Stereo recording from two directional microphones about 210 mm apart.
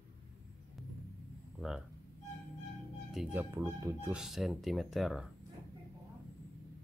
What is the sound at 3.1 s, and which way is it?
Speech, 5° right (ahead or behind).